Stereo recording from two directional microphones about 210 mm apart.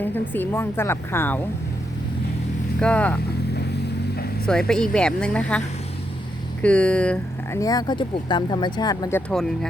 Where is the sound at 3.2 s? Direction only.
50° left (ahead or behind).